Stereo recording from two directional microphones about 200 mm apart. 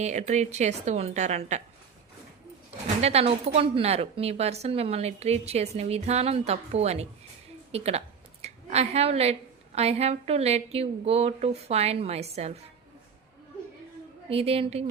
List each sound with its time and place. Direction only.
0.0 s a woman's voice: 35° right (ahead or behind)
3.0 s a woman's voice: 30° right (ahead or behind)
7.7 s a sound: 30° right (ahead or behind)
9.7 s a woman's voice: 30° right (ahead or behind)
14.3 s a woman's voice: 30° right (ahead or behind)